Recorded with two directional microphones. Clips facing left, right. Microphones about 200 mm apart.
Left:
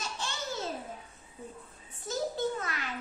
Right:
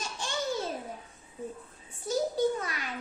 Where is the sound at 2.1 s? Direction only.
15° right (ahead or behind).